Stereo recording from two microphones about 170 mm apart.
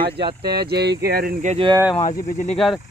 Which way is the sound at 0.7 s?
75° right (ahead or behind).